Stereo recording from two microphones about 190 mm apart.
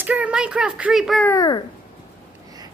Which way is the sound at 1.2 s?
20° left (ahead or behind).